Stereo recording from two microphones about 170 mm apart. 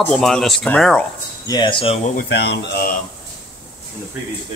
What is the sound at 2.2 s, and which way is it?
Speech, 80° left.